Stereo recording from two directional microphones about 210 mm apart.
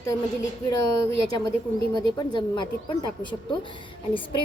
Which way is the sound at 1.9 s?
20° left (ahead or behind).